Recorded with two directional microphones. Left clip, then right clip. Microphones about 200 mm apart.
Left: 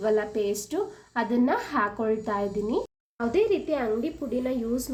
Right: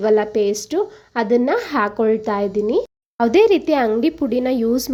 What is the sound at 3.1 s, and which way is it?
Speech, 50° right (ahead or behind).